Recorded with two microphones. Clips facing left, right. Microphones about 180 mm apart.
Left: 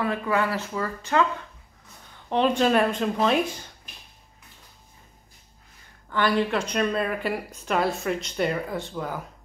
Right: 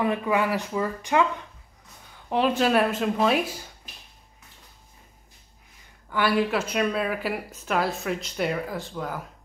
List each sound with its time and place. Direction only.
0.0 s speech: 15° right (ahead or behind)
2.2 s speech: 5° right (ahead or behind)
6.0 s speech: 5° right (ahead or behind)